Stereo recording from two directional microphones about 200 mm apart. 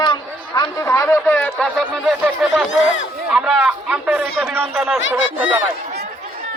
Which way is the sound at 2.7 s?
35° left (ahead or behind).